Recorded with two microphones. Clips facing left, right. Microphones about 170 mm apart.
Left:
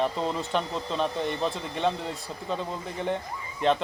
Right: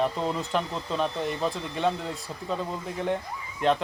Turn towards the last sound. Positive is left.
turn(degrees=0)  # may be behind; listen again after turning